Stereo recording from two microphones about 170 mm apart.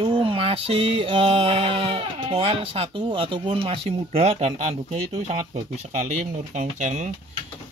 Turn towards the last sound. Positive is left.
turn(degrees=-45)  # may be behind; listen again after turning